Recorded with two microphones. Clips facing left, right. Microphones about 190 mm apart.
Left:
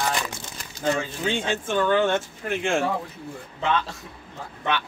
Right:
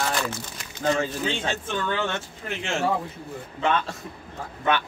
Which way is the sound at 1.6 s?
50° left (ahead or behind).